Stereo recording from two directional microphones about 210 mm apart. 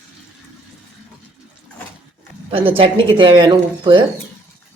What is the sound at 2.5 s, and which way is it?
Speech, 25° right (ahead or behind).